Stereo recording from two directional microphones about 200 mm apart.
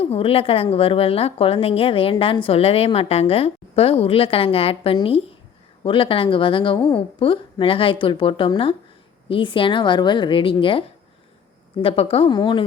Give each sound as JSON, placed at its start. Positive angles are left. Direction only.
{"t": 0.0, "sound": "a woman's voice", "side_deg": 30}